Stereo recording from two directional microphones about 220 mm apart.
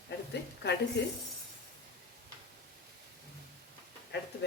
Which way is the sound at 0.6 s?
50° left (ahead or behind).